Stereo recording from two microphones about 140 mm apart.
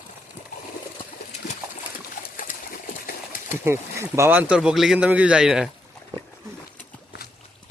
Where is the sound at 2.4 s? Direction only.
85° left.